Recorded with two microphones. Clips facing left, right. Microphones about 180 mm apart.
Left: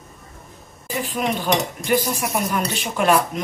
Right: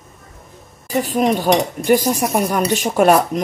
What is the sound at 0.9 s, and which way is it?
Dishes, 40° right (ahead or behind).